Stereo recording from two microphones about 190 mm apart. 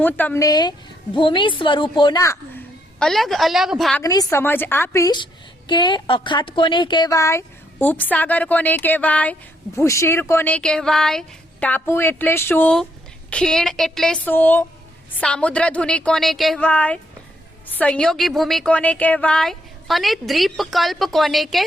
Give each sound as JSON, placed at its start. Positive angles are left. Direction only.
{"t": 0.0, "sound": "a woman's voice", "side_deg": 10}
{"t": 3.0, "sound": "a woman's voice", "side_deg": 0}
{"t": 4.0, "sound": "a woman's voice", "side_deg": 20}